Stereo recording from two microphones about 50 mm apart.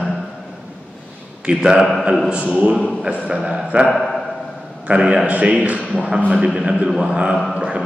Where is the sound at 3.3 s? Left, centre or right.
Centre.